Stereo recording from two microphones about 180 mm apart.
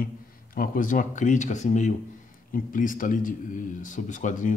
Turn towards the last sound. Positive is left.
turn(degrees=45)  # may be behind; listen again after turning